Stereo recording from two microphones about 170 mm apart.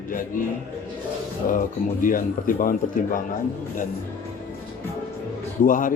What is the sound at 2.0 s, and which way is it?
A man's voice, 55° left (ahead or behind).